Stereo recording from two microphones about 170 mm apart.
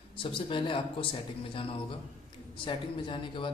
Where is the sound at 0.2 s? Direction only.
30° left (ahead or behind).